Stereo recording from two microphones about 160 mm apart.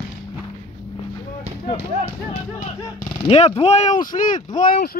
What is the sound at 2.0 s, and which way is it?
Speech, 40° left (ahead or behind).